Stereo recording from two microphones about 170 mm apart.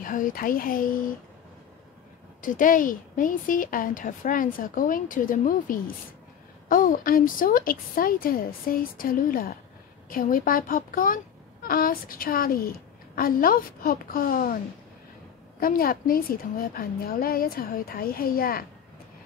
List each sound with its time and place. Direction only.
0.0 s a woman's voice: 55° left (ahead or behind)
2.4 s a woman's voice: 50° left (ahead or behind)
15.6 s a woman's voice: 55° left (ahead or behind)